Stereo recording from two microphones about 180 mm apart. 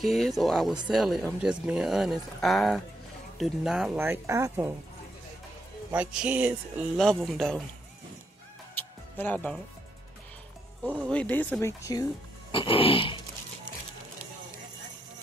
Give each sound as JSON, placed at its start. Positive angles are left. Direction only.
{"t": 0.0, "sound": "speech", "side_deg": 0}
{"t": 4.1, "sound": "speech", "side_deg": -15}
{"t": 5.9, "sound": "speech", "side_deg": -5}
{"t": 8.7, "sound": "music", "side_deg": 10}
{"t": 11.1, "sound": "speech", "side_deg": 10}